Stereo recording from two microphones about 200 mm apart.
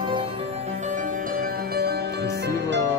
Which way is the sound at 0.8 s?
40° right (ahead or behind).